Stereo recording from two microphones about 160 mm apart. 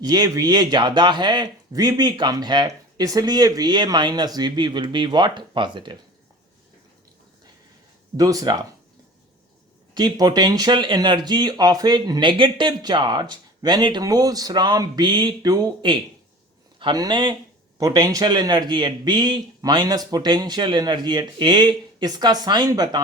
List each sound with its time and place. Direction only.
0.0 s speech: 25° right (ahead or behind)
8.1 s speech: 25° right (ahead or behind)
9.9 s speech: 25° right (ahead or behind)